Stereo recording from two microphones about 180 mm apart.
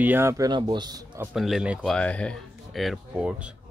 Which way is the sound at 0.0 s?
10° right (ahead or behind).